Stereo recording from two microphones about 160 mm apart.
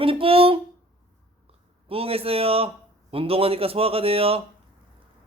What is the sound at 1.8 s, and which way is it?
A man's voice, 35° right (ahead or behind).